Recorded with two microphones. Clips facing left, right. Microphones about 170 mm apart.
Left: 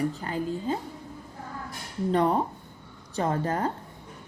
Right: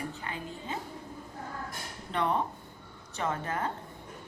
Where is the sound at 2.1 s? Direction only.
40° left (ahead or behind).